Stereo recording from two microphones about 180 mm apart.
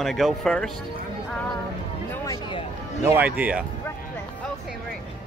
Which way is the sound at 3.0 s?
10° right (ahead or behind).